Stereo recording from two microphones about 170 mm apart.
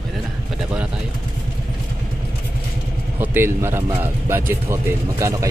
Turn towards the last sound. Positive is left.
turn(degrees=-20)  # may be behind; listen again after turning